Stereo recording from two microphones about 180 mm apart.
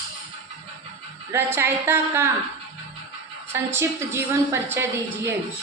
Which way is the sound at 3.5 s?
15° right (ahead or behind).